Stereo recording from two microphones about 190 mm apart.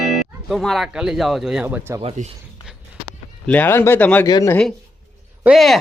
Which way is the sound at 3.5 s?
10° left (ahead or behind).